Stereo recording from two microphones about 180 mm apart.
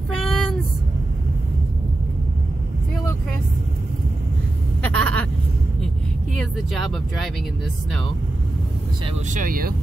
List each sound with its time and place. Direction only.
0.1 s a sound: centre (ahead or behind)
4.8 s vehicle: 10° left (ahead or behind)
9.3 s speech: 50° right (ahead or behind)